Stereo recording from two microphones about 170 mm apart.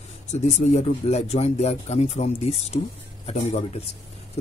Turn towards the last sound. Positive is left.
turn(degrees=35)  # may be behind; listen again after turning